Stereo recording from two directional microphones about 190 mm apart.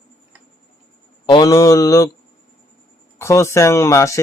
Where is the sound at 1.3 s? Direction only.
20° left (ahead or behind).